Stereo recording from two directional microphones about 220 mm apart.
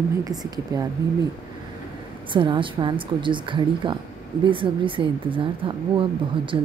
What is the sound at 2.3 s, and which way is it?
A woman's voice, 20° right (ahead or behind).